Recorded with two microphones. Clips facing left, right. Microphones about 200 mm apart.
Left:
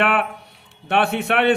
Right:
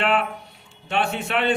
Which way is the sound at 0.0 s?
60° left (ahead or behind).